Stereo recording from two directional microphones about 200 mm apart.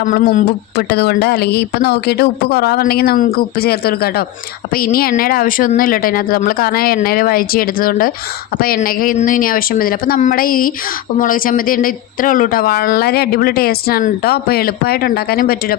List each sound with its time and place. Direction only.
0.0 s speech: 40° left (ahead or behind)